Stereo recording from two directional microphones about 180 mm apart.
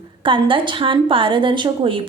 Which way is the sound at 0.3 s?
30° right (ahead or behind).